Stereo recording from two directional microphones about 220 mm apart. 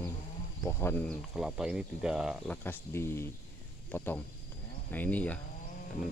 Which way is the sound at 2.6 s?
10° left (ahead or behind).